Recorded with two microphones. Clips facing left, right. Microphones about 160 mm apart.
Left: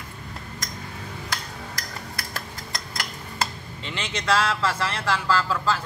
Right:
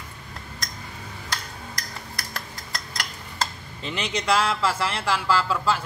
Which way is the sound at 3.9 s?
15° right (ahead or behind).